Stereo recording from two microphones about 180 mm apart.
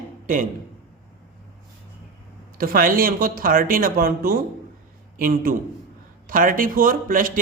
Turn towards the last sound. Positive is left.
turn(degrees=-50)  # may be behind; listen again after turning